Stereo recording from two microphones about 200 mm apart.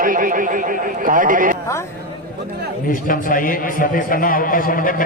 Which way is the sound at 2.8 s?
45° left (ahead or behind).